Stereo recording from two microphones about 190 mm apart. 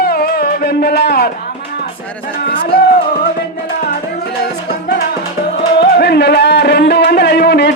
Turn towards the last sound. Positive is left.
turn(degrees=60)  # may be behind; listen again after turning